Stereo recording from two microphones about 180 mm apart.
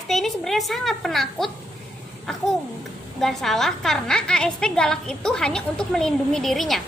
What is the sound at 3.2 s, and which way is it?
A woman's voice, centre (ahead or behind).